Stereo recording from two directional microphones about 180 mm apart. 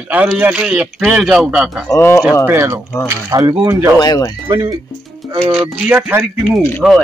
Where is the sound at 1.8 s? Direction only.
15° left (ahead or behind).